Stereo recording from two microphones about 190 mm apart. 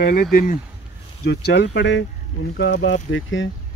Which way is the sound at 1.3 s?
60° left (ahead or behind).